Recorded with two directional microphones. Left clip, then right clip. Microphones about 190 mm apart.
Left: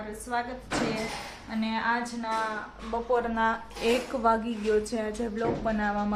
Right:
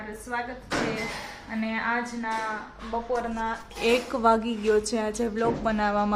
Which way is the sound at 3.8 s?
15° right (ahead or behind).